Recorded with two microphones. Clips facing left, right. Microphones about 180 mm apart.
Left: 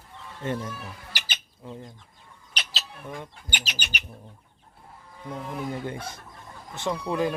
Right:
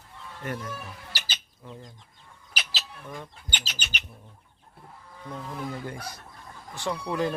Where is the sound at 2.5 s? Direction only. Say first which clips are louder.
Even; centre (ahead or behind).